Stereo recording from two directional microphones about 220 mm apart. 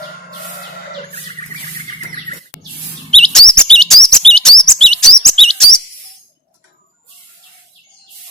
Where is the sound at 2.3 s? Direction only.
30° right (ahead or behind).